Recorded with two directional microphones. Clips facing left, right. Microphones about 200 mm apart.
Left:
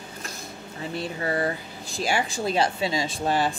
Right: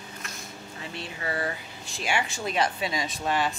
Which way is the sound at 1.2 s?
35° left (ahead or behind).